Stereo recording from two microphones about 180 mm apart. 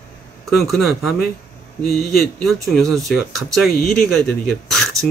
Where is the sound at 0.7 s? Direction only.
Centre (ahead or behind).